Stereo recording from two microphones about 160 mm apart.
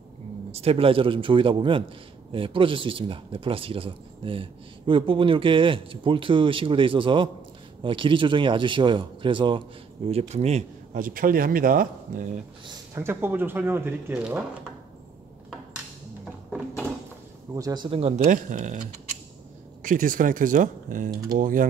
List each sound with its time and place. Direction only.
0.5 s speech: 40° right (ahead or behind)
10.0 s speech: 40° right (ahead or behind); by 12.3 s 60° right (ahead or behind)
12.6 s speech: 15° right (ahead or behind)
17.6 s speech: 20° right (ahead or behind)
17.8 s speech: 35° right (ahead or behind)
18.2 s speech: 55° right (ahead or behind)
19.8 s speech: 55° right (ahead or behind)